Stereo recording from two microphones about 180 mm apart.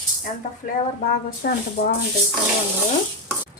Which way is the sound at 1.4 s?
55° left (ahead or behind).